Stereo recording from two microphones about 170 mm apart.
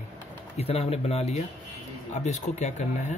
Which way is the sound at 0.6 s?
35° left (ahead or behind).